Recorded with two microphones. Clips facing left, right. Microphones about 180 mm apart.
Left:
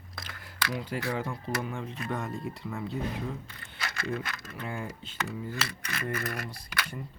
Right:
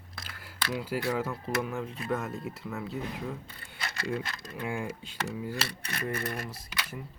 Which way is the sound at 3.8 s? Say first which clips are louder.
Even; 30° right (ahead or behind).